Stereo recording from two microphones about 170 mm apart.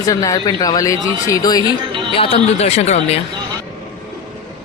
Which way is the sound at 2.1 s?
35° left (ahead or behind).